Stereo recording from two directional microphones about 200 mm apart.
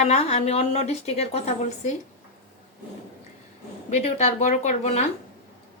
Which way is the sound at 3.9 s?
35° left (ahead or behind).